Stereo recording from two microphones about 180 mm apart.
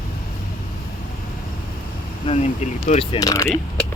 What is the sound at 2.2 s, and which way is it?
Speech, 35° left (ahead or behind).